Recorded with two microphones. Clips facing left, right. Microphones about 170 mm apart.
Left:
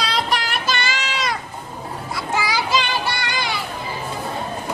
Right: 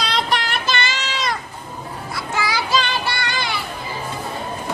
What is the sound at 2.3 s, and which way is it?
Music, 15° left (ahead or behind).